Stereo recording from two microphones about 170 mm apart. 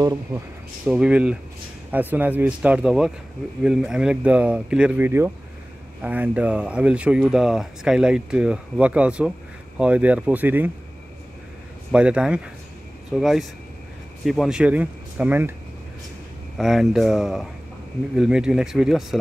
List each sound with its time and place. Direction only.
0.0 s speech: 20° right (ahead or behind)
0.8 s speech: 5° right (ahead or behind)
11.9 s speech: 5° right (ahead or behind)
16.5 s speech: centre (ahead or behind)